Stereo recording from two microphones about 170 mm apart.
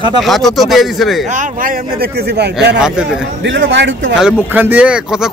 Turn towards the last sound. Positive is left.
turn(degrees=-5)  # may be behind; listen again after turning